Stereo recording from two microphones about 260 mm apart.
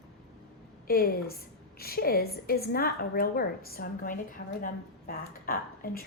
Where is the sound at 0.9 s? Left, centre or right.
Left.